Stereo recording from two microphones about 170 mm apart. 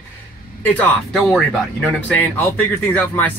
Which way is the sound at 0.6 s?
10° left (ahead or behind).